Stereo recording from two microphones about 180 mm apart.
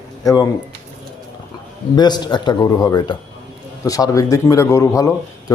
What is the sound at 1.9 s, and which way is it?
Speech, 25° left (ahead or behind).